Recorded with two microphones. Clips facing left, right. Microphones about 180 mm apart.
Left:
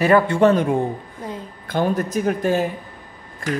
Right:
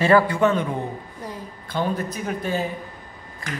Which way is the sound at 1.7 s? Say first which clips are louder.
Left 5 dB; 45° left (ahead or behind).